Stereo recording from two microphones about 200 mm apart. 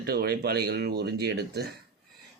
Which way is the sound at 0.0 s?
50° right (ahead or behind).